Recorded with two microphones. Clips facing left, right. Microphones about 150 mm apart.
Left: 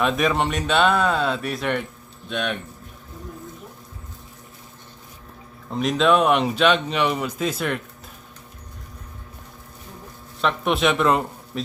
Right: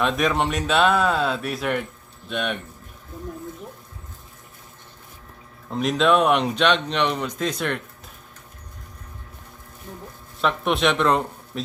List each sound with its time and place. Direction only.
0.0 s speech: centre (ahead or behind)
5.7 s speech: centre (ahead or behind)
10.4 s speech: centre (ahead or behind)